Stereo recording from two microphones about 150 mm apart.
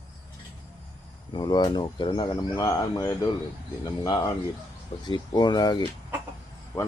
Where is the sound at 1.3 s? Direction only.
30° left (ahead or behind).